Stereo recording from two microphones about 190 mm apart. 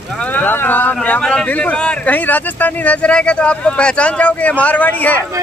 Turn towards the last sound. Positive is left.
turn(degrees=10)  # may be behind; listen again after turning